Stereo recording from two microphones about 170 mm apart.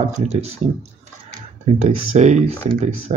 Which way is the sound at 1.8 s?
40° right (ahead or behind).